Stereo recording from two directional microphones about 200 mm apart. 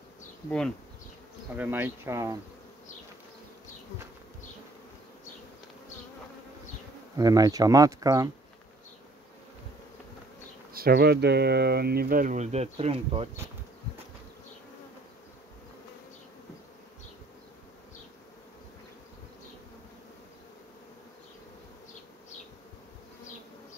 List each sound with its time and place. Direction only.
0.5 s bee: 5° left (ahead or behind)
1.6 s speech: 10° right (ahead or behind)
7.2 s speech: 20° right (ahead or behind)
10.7 s speech: 50° right (ahead or behind); by 13.3 s 30° right (ahead or behind)